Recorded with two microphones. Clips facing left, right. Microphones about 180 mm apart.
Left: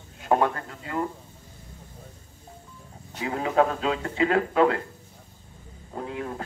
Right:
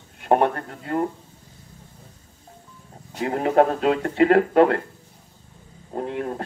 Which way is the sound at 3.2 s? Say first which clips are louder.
Right 5 dB; 50° right (ahead or behind).